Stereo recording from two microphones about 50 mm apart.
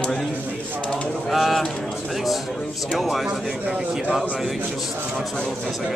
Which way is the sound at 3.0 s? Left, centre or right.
Centre.